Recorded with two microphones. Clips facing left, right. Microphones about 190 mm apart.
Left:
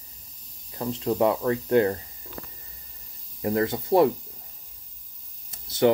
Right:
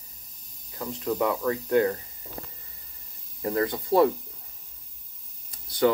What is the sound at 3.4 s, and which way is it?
Speech, 25° left (ahead or behind).